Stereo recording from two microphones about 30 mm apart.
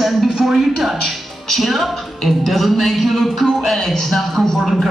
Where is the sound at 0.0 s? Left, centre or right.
Centre.